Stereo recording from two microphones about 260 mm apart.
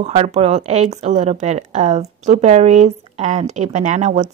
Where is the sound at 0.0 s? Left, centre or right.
Right.